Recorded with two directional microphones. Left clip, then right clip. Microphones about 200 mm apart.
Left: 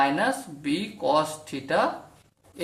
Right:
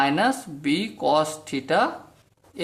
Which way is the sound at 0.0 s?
45° right (ahead or behind).